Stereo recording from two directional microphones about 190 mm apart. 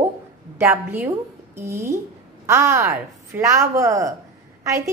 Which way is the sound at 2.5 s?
15° right (ahead or behind).